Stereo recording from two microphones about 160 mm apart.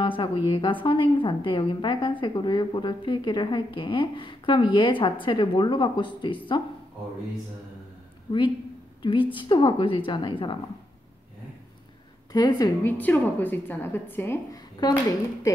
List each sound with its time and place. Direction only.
0.0 s a woman's voice: 30° left (ahead or behind)
9.0 s a woman's voice: 30° left (ahead or behind)
12.3 s a woman's voice: 25° left (ahead or behind)
12.9 s a woman's voice: 10° left (ahead or behind)